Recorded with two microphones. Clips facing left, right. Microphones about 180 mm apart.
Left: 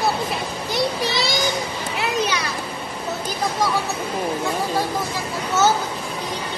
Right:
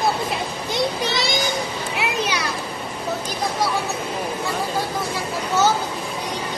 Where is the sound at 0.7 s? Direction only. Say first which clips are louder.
Even; 20° right (ahead or behind).